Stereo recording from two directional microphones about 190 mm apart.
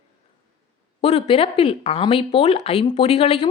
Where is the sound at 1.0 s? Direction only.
30° left (ahead or behind).